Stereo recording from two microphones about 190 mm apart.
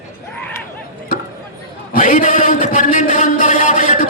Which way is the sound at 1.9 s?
40° left (ahead or behind).